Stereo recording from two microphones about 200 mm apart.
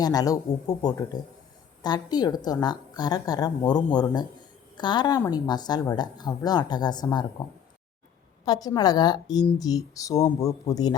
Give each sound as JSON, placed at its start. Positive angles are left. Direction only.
{"t": 0.0, "sound": "a woman's voice", "side_deg": 20}
{"t": 8.4, "sound": "a woman's voice", "side_deg": 20}